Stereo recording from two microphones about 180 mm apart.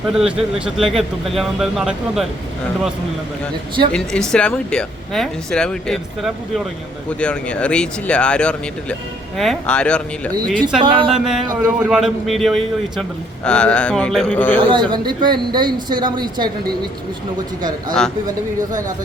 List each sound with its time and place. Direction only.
0.1 s a man's voice: 5° right (ahead or behind)
3.9 s a man's voice: 5° left (ahead or behind)
10.8 s a woman's voice: 30° right (ahead or behind)
11.3 s a man's voice: 5° right (ahead or behind)
14.7 s a woman's voice: 25° right (ahead or behind)
17.6 s a woman's voice: 20° right (ahead or behind)